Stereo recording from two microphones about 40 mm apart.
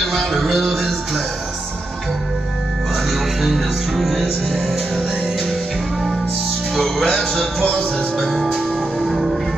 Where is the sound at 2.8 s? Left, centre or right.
Centre.